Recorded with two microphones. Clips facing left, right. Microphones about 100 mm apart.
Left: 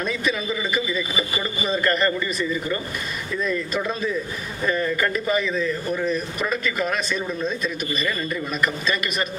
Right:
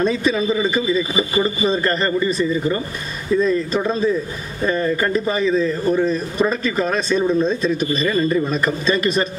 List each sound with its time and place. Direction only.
0.0 s a man's voice: 30° right (ahead or behind)